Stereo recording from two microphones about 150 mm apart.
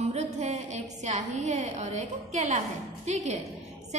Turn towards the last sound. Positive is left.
turn(degrees=-50)  # may be behind; listen again after turning